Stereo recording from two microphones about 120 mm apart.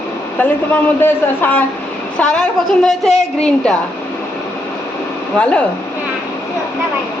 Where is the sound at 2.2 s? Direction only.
5° left (ahead or behind).